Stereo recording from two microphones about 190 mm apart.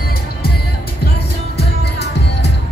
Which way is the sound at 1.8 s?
60° left (ahead or behind).